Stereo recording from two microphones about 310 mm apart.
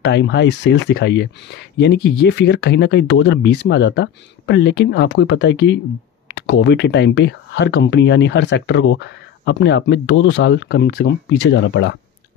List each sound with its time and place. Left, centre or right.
0.0 s speech: left